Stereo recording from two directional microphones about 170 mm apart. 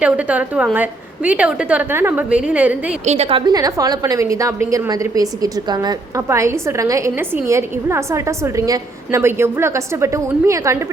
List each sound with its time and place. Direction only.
0.0 s a woman's voice: 5° right (ahead or behind)
3.0 s a woman's voice: 40° right (ahead or behind); by 10.8 s 20° right (ahead or behind)